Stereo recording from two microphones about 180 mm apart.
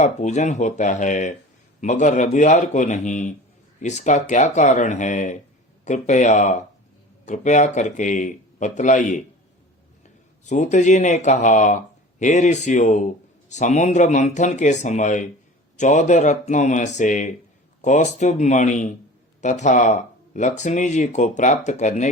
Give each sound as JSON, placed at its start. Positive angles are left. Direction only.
{"t": 0.0, "sound": "speech", "side_deg": 40}
{"t": 10.4, "sound": "speech", "side_deg": 40}